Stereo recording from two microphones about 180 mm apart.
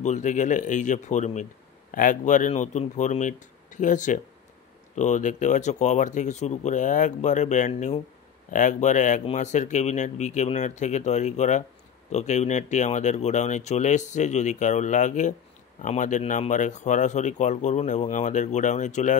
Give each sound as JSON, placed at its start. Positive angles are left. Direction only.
{"t": 0.0, "sound": "speech", "side_deg": 40}